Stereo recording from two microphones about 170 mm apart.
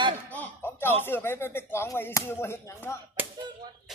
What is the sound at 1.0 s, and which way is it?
Speech, 15° left (ahead or behind).